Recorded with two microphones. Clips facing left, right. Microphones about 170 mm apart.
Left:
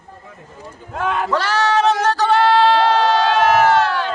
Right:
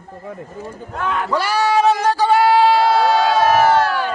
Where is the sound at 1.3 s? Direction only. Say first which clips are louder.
Right 2 dB; 10° right (ahead or behind).